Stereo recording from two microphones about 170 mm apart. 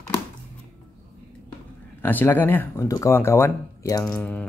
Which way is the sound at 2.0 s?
10° left (ahead or behind).